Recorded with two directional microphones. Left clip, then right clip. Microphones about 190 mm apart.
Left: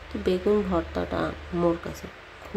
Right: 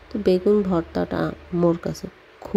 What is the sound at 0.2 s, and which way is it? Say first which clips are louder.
Speech: right 5 dB; 30° right (ahead or behind).